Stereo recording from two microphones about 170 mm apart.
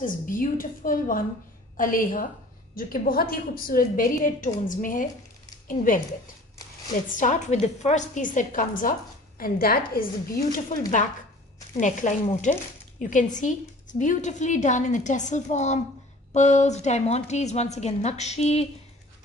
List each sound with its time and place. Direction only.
0.0 s a woman's voice: 50° left (ahead or behind)
6.9 s a woman's voice: 50° left (ahead or behind)